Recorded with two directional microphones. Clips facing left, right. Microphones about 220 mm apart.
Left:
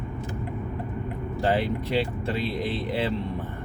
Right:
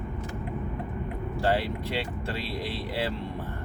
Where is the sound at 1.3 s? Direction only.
20° left (ahead or behind).